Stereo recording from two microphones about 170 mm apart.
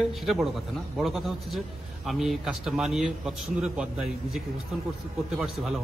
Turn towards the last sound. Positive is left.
turn(degrees=-5)  # may be behind; listen again after turning